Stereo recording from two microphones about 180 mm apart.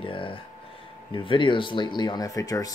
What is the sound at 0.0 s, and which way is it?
Speech, 30° left (ahead or behind).